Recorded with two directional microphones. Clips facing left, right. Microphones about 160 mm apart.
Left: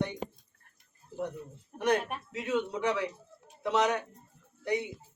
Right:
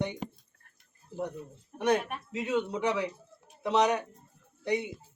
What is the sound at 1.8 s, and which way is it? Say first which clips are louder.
A man's voice: right 1 dB; 20° right (ahead or behind).